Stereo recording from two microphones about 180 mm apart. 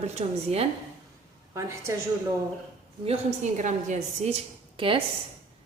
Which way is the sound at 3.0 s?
40° right (ahead or behind).